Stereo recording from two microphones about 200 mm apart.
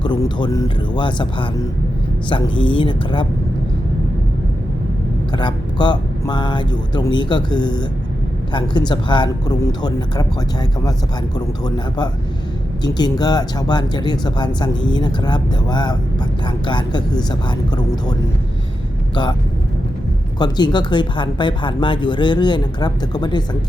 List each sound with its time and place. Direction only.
0.0 s speech: 20° left (ahead or behind)
2.6 s speech: 25° left (ahead or behind)
5.3 s speech: 20° left (ahead or behind)
19.1 s speech: 25° left (ahead or behind)
20.4 s speech: 20° left (ahead or behind)